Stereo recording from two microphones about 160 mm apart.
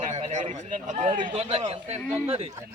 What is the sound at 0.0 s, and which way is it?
A man's voice, 50° right (ahead or behind).